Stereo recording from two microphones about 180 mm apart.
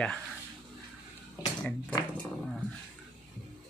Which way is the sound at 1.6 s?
5° left (ahead or behind).